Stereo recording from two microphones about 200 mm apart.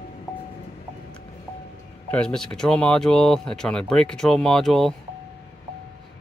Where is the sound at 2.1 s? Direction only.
5° left (ahead or behind).